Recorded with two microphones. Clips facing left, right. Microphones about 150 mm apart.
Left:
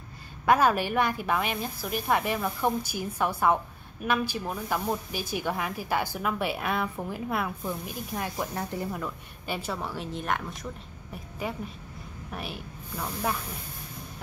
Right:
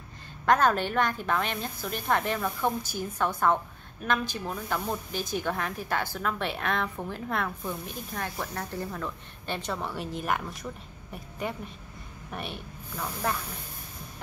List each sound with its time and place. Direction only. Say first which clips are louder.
0.5 s speech: left 1 dB; 10° left (ahead or behind)